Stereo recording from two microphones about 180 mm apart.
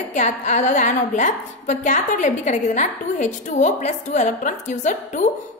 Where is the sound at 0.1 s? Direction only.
40° left (ahead or behind).